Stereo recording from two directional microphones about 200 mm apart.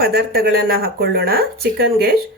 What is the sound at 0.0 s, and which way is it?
Speech, 50° right (ahead or behind).